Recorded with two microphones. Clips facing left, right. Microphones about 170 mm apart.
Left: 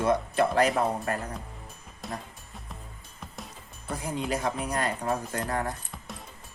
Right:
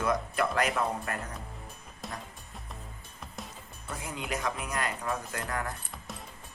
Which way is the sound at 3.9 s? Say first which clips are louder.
Left 6 dB; 35° left (ahead or behind).